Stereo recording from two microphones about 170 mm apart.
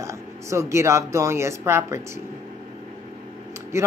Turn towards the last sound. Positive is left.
turn(degrees=-15)  # may be behind; listen again after turning